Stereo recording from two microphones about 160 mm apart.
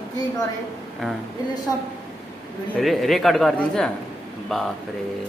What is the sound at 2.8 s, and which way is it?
A man's voice, centre (ahead or behind).